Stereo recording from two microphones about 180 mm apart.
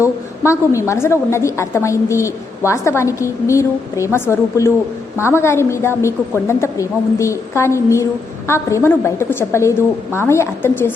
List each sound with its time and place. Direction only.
0.0 s a woman's voice: 15° left (ahead or behind)